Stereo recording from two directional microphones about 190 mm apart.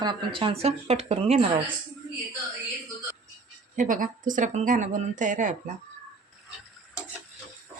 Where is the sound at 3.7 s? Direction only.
45° right (ahead or behind).